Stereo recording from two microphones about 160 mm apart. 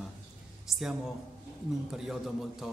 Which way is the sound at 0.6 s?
Centre (ahead or behind).